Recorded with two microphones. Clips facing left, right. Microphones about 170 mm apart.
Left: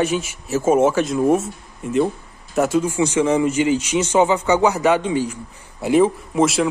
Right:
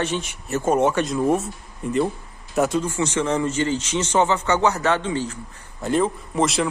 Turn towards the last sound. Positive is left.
turn(degrees=5)  # may be behind; listen again after turning